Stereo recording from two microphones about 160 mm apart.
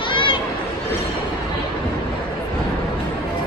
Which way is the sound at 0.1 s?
30° left (ahead or behind).